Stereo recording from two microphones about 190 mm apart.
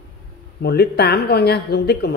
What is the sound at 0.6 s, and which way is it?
Speech, 60° left (ahead or behind).